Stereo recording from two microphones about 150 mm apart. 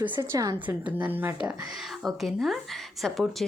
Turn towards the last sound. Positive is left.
turn(degrees=0)  # may be behind; listen again after turning